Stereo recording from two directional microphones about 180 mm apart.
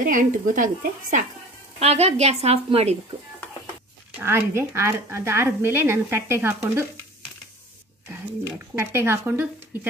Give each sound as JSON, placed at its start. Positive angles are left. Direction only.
{"t": 0.0, "sound": "speech", "side_deg": -45}
{"t": 1.8, "sound": "a woman's voice", "side_deg": -35}
{"t": 4.2, "sound": "a woman's voice", "side_deg": -15}
{"t": 8.5, "sound": "a woman's voice", "side_deg": -15}